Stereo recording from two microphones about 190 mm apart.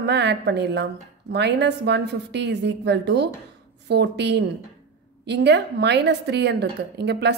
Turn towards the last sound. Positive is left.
turn(degrees=-60)  # may be behind; listen again after turning